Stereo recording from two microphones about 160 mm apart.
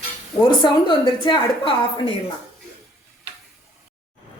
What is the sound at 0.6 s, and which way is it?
A woman's voice, 30° left (ahead or behind).